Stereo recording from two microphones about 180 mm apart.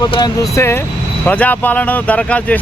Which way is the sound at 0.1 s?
20° left (ahead or behind).